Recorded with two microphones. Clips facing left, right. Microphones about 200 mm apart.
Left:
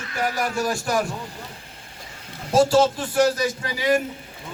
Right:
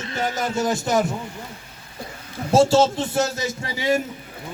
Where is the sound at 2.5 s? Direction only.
25° right (ahead or behind).